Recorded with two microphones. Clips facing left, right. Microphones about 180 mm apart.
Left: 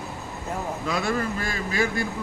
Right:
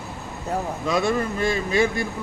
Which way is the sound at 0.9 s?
20° right (ahead or behind).